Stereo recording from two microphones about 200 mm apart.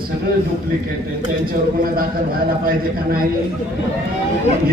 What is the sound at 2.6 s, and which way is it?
Speech, 45° right (ahead or behind).